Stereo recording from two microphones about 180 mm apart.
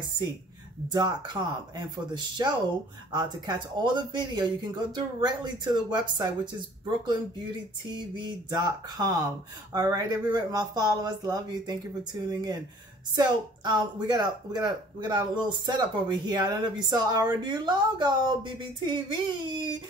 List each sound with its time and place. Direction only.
0.9 s speech: 25° right (ahead or behind)
8.2 s speech: 25° right (ahead or behind)